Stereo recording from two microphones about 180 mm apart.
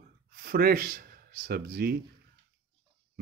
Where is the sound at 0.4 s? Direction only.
55° right (ahead or behind).